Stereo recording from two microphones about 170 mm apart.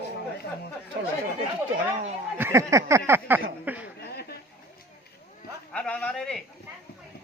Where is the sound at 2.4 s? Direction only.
15° right (ahead or behind).